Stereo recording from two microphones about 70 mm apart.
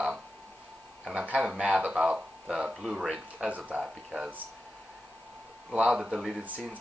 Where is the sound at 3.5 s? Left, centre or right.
Centre.